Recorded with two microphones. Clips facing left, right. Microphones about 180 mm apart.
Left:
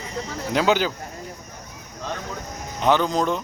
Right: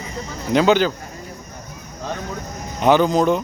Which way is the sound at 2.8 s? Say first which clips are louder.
Right 5 dB; 10° right (ahead or behind).